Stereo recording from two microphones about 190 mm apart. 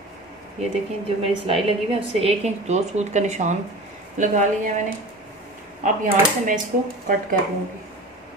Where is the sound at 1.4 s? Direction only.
30° right (ahead or behind).